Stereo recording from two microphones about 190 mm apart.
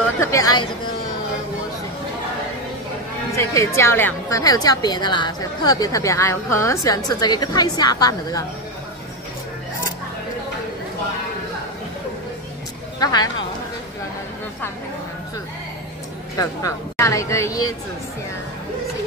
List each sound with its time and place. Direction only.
0.3 s a woman's voice: 15° left (ahead or behind)
3.3 s a woman's voice: 15° left (ahead or behind)
13.0 s a woman's voice: 20° left (ahead or behind)
16.9 s a woman's voice: 15° left (ahead or behind)